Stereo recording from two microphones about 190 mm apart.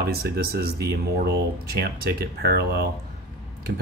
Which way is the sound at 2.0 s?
55° right (ahead or behind).